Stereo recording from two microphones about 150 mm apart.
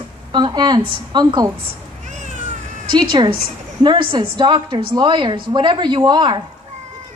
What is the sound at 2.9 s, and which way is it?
A woman's voice, 30° right (ahead or behind).